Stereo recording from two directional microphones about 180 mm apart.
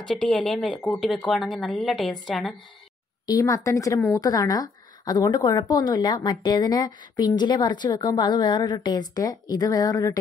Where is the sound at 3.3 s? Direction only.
20° left (ahead or behind).